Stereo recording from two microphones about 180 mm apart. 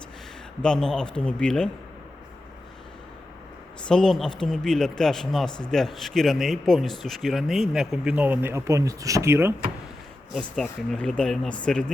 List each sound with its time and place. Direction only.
0.6 s speech: 5° left (ahead or behind)
3.8 s speech: 5° left (ahead or behind); by 9.6 s 15° right (ahead or behind)
10.3 s speech: 5° left (ahead or behind)